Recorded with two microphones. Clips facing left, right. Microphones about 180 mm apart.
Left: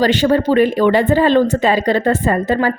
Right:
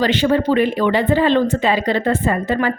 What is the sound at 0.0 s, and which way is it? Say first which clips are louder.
Speech: left 2 dB; 40° left (ahead or behind).